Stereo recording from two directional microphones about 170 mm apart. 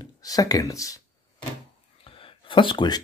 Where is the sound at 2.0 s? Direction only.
30° left (ahead or behind).